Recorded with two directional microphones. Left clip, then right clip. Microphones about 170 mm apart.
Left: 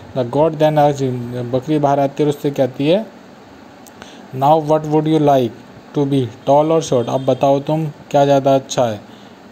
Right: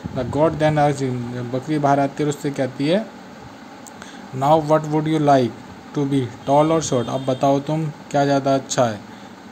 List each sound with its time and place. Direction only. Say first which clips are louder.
0.1 s speech: left 4 dB; 20° left (ahead or behind)
4.4 s a man's voice: left 3 dB; 15° left (ahead or behind)